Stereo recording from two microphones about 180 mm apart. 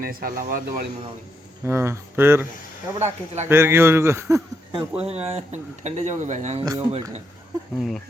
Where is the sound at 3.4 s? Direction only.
15° right (ahead or behind).